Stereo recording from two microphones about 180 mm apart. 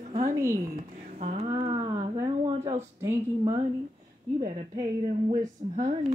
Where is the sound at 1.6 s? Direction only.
20° right (ahead or behind).